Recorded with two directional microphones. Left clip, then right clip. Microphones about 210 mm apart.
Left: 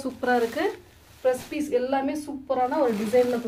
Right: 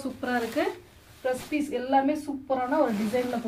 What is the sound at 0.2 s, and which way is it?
Speech, 50° left (ahead or behind).